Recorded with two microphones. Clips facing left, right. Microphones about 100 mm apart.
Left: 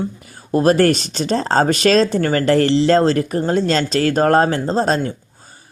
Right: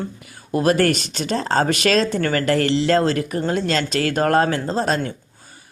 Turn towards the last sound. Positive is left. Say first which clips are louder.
# left 4 dB
turn(degrees=30)  # may be behind; listen again after turning